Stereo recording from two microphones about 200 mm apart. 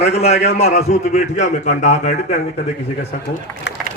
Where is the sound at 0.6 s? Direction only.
35° left (ahead or behind).